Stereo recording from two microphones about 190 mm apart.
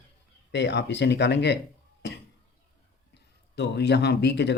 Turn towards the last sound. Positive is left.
turn(degrees=65)  # may be behind; listen again after turning